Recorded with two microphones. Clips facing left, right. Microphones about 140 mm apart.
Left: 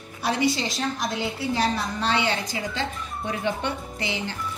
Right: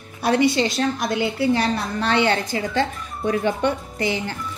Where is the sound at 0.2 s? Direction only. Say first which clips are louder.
Right 6 dB; 60° right (ahead or behind).